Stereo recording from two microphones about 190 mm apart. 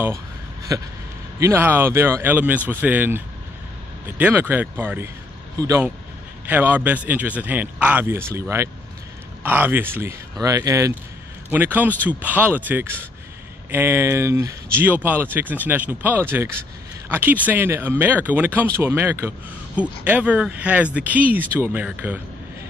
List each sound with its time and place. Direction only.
0.7 s speech: 15° right (ahead or behind)